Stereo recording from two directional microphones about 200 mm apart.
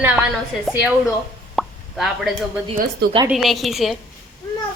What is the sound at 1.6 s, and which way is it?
Plop, centre (ahead or behind).